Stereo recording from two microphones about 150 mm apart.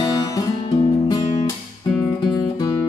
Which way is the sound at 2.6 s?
25° left (ahead or behind).